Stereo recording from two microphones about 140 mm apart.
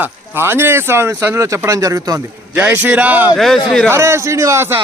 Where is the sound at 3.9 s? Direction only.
20° right (ahead or behind).